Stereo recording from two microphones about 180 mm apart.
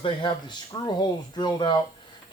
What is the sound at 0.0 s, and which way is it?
Speech, 25° left (ahead or behind).